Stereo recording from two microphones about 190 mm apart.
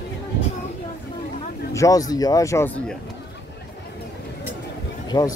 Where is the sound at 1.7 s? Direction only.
20° left (ahead or behind).